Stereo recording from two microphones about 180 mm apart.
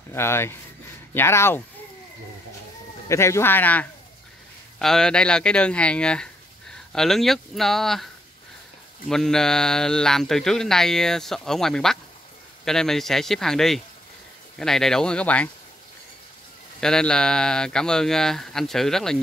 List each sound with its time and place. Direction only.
0.1 s speech: 15° left (ahead or behind)
3.1 s speech: 15° left (ahead or behind)
9.1 s speech: 5° left (ahead or behind)
16.8 s speech: 5° left (ahead or behind)